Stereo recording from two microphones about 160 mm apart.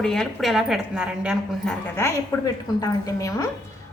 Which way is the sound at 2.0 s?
25° left (ahead or behind).